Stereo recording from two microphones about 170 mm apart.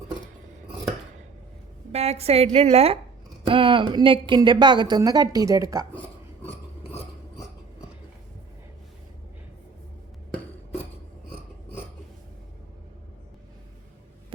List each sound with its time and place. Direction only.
1.9 s a woman's voice: 40° right (ahead or behind); by 5.8 s 20° right (ahead or behind)